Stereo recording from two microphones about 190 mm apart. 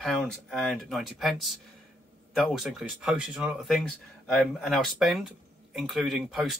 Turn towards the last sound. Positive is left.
turn(degrees=0)  # may be behind; listen again after turning